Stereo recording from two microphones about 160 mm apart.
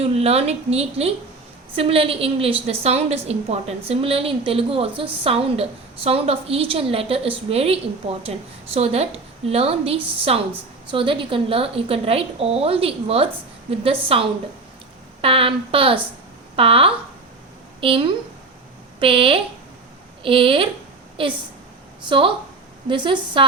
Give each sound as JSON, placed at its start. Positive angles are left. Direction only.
{"t": 0.0, "sound": "a woman's voice", "side_deg": -40}
{"t": 15.2, "sound": "a woman's voice", "side_deg": -35}
{"t": 22.9, "sound": "a woman's voice", "side_deg": -30}